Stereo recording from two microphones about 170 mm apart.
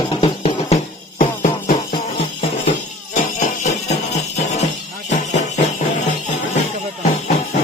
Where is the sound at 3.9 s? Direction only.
40° left (ahead or behind).